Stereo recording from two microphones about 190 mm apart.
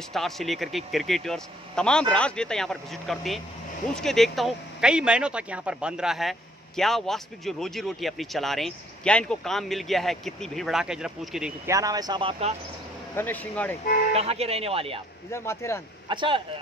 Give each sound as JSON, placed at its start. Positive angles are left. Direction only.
{"t": 0.1, "sound": "speech", "side_deg": 0}
{"t": 11.6, "sound": "speech", "side_deg": -15}
{"t": 13.1, "sound": "speech", "side_deg": 10}
{"t": 14.1, "sound": "speech", "side_deg": -30}
{"t": 15.3, "sound": "speech", "side_deg": 15}
{"t": 16.1, "sound": "speech", "side_deg": -25}